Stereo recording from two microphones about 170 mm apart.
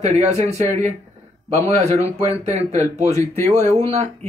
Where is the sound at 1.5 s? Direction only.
40° right (ahead or behind).